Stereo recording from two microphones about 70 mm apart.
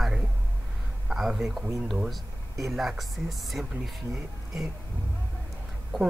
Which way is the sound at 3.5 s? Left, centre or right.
Centre.